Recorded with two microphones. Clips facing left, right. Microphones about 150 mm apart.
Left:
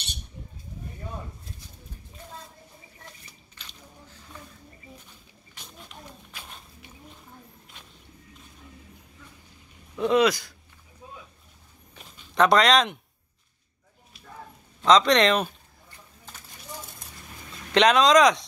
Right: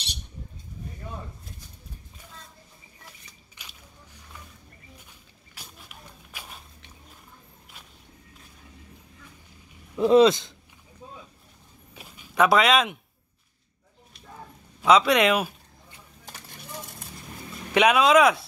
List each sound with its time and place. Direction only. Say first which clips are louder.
3.5 s squish: left 2 dB; 10° right (ahead or behind)
5.5 s a sound: left 2 dB; 5° right (ahead or behind)
10.0 s speech: right 4 dB; 30° right (ahead or behind)
11.9 s a sound: right 1 dB; 10° right (ahead or behind)
14.8 s speech: even; 10° right (ahead or behind)
17.7 s speech: even; 5° right (ahead or behind)